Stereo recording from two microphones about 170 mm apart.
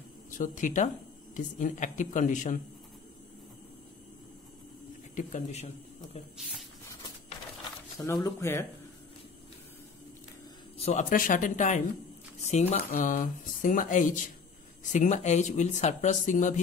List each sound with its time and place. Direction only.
0.4 s speech: 50° left (ahead or behind)
5.1 s speech: 45° left (ahead or behind)
8.1 s speech: 15° left (ahead or behind)
10.8 s speech: 35° left (ahead or behind)
11.1 s speech: 55° left (ahead or behind)